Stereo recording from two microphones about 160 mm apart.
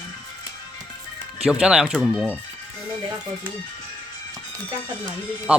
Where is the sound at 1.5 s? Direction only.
5° right (ahead or behind).